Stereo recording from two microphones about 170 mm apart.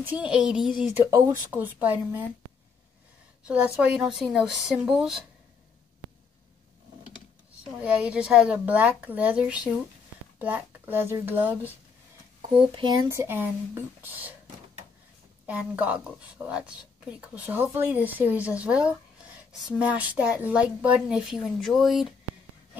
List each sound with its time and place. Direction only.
0.0 s speech: 10° right (ahead or behind)
3.4 s speech: 5° right (ahead or behind)
7.8 s speech: 5° right (ahead or behind)
12.4 s speech: 25° right (ahead or behind)
13.1 s speech: 15° right (ahead or behind)
15.7 s speech: 10° right (ahead or behind)